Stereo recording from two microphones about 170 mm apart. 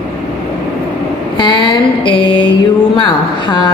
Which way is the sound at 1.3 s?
30° left (ahead or behind).